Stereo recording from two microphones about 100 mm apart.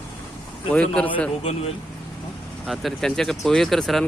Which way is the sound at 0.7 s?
15° left (ahead or behind).